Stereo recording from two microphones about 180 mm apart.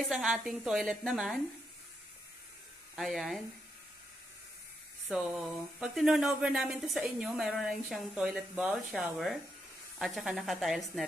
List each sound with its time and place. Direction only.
0.0 s speech: centre (ahead or behind)
3.0 s speech: centre (ahead or behind)
5.0 s speech: centre (ahead or behind)